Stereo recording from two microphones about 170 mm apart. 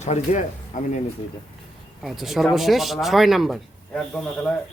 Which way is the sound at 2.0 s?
Centre (ahead or behind).